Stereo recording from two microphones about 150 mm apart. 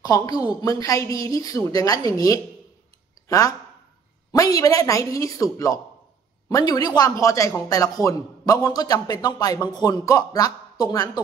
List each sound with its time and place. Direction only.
0.0 s speech: 25° left (ahead or behind)